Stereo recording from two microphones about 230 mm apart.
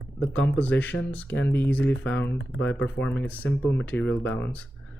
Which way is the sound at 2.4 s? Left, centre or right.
Left.